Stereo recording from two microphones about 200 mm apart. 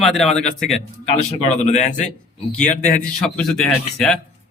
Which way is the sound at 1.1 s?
35° left (ahead or behind).